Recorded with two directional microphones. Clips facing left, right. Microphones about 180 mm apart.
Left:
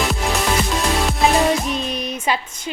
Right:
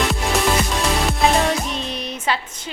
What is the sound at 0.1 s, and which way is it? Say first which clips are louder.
Music: right 1 dB; centre (ahead or behind).